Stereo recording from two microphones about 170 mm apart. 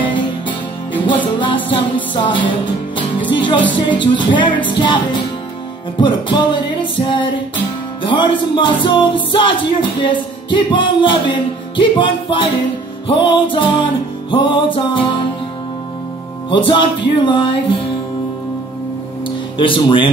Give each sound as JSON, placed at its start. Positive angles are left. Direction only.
{"t": 0.0, "sound": "music", "side_deg": 30}
{"t": 16.4, "sound": "music", "side_deg": 30}
{"t": 19.2, "sound": "music", "side_deg": 30}